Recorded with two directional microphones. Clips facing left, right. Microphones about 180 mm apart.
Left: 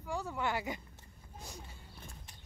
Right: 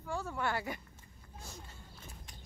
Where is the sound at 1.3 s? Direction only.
15° left (ahead or behind).